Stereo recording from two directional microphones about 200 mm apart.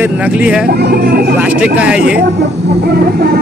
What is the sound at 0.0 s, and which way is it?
Speech, 5° right (ahead or behind).